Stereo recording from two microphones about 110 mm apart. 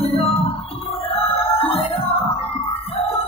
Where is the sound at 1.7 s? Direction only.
60° left (ahead or behind).